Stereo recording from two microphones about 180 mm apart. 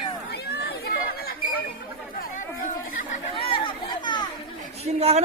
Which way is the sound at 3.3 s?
30° left (ahead or behind).